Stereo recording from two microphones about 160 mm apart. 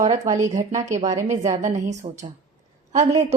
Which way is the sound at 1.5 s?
50° right (ahead or behind).